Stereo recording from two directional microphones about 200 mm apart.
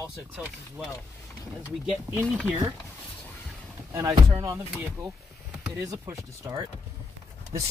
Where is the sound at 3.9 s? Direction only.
15° right (ahead or behind).